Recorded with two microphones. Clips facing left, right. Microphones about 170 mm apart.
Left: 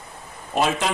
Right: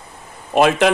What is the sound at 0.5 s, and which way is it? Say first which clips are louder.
Speech: right 8 dB; 70° right (ahead or behind).